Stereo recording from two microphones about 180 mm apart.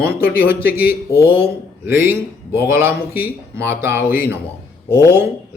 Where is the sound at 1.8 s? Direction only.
10° right (ahead or behind).